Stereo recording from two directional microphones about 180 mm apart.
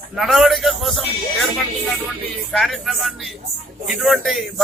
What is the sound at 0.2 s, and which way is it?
A man's voice, centre (ahead or behind).